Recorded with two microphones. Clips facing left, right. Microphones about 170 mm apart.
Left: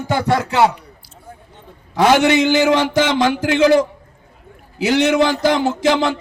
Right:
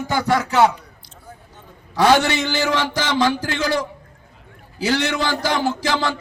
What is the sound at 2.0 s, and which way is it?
A man's voice, 20° left (ahead or behind).